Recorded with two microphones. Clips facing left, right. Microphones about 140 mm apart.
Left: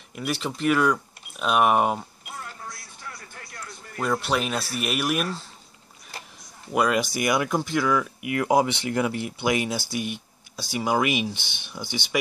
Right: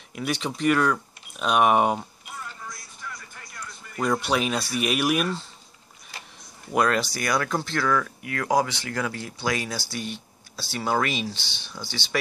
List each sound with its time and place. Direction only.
0.1 s speech: centre (ahead or behind)
4.0 s speech: 5° left (ahead or behind)
6.7 s speech: 10° left (ahead or behind)
7.1 s speech: 20° left (ahead or behind)